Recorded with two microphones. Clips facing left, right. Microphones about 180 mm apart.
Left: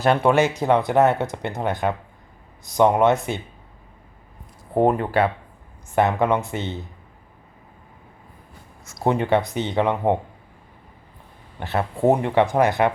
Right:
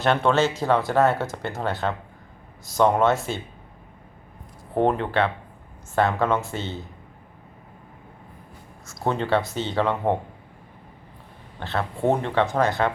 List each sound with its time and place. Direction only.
0.2 s speech: 15° left (ahead or behind)
4.7 s speech: 10° left (ahead or behind)
9.0 s speech: 15° left (ahead or behind)
11.6 s speech: 15° left (ahead or behind)